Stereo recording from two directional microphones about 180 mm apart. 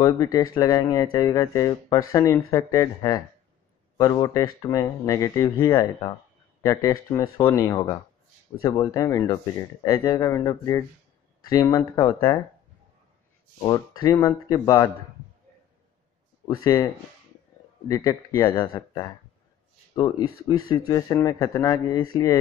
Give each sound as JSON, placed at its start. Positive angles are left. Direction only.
{"t": 0.0, "sound": "speech", "side_deg": 20}
{"t": 13.6, "sound": "speech", "side_deg": 20}
{"t": 16.4, "sound": "speech", "side_deg": 15}
{"t": 17.8, "sound": "speech", "side_deg": 20}